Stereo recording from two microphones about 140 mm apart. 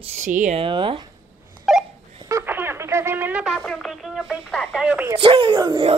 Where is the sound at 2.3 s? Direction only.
20° right (ahead or behind).